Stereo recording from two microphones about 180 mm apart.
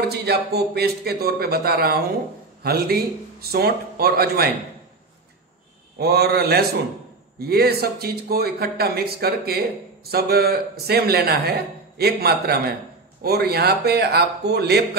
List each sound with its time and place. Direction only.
0.1 s a man's voice: 65° right (ahead or behind)
5.9 s a man's voice: 60° right (ahead or behind)